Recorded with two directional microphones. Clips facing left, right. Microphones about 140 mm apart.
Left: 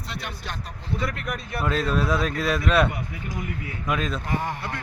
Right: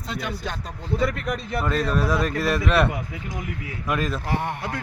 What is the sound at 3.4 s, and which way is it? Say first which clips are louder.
Speech: even; 90° right.